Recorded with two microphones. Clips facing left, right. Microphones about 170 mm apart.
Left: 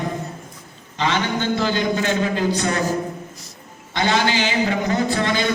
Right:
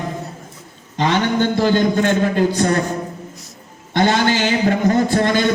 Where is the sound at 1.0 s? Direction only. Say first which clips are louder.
Right 5 dB; 50° right (ahead or behind).